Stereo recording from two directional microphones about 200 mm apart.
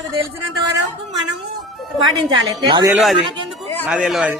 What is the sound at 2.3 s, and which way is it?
Speech, 20° right (ahead or behind).